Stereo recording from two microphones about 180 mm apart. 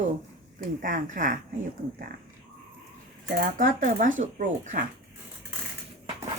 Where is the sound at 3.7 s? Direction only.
45° right (ahead or behind).